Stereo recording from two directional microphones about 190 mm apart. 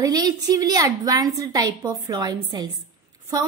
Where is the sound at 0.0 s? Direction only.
20° right (ahead or behind).